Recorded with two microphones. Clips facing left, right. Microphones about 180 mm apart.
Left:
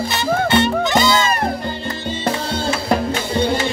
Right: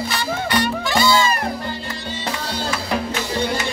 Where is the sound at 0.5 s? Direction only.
20° left (ahead or behind).